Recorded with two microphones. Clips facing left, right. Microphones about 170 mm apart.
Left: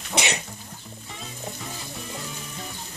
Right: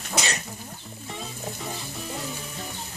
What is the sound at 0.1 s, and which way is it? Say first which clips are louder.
Cough: left 2 dB; 20° left (ahead or behind).